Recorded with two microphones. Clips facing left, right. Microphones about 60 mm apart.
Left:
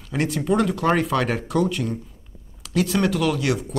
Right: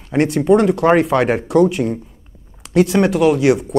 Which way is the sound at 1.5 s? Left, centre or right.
Centre.